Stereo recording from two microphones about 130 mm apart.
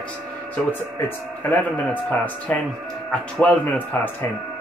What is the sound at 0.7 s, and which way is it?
Speech, 15° left (ahead or behind).